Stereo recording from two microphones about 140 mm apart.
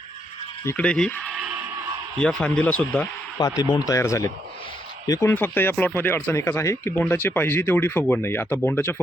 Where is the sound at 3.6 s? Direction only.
30° left (ahead or behind).